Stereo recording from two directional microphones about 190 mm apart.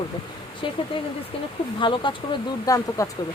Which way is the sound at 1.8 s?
25° left (ahead or behind).